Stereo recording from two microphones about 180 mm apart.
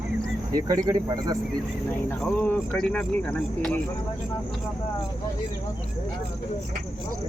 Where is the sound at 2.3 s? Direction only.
10° left (ahead or behind).